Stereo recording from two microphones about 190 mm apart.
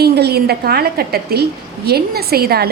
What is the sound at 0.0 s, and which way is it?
A woman's voice, 60° right (ahead or behind).